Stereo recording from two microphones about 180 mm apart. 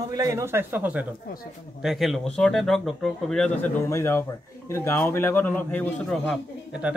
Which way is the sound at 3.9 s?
15° left (ahead or behind).